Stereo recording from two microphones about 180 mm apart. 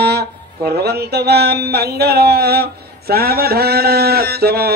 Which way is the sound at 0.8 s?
65° right (ahead or behind).